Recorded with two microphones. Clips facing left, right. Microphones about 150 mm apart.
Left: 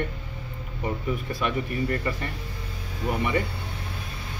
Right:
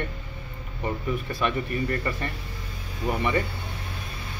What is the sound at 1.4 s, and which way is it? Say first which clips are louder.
Speech: even; 10° left (ahead or behind).